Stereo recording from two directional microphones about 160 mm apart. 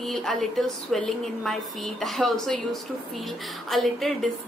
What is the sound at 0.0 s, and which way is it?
A woman's voice, centre (ahead or behind).